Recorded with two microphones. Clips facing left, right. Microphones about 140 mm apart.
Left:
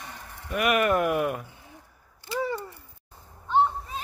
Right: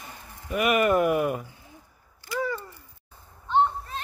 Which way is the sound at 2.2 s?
25° left (ahead or behind).